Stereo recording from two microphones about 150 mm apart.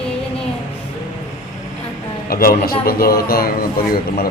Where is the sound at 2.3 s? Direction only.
75° left (ahead or behind).